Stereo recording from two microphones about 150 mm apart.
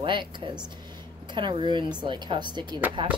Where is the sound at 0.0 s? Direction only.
30° right (ahead or behind).